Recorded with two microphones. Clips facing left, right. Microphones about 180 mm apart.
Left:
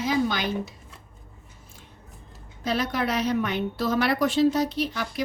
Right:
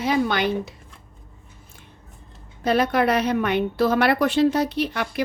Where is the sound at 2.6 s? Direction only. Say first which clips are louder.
Right 7 dB; 60° right (ahead or behind).